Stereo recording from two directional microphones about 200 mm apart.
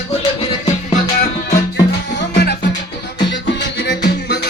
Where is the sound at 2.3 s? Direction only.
55° left (ahead or behind).